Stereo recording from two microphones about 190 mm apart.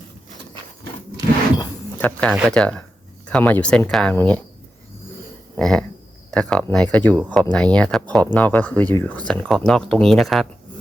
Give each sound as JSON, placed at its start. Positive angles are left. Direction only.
{"t": 2.0, "sound": "speech", "side_deg": 10}
{"t": 5.5, "sound": "speech", "side_deg": 5}